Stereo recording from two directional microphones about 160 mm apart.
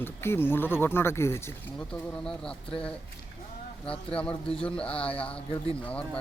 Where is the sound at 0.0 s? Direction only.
15° left (ahead or behind).